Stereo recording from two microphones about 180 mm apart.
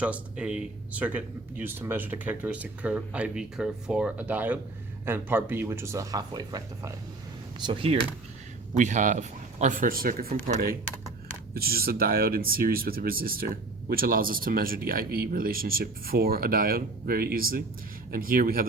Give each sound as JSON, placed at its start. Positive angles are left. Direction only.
{"t": 0.0, "sound": "speech", "side_deg": -5}
{"t": 8.7, "sound": "speech", "side_deg": -40}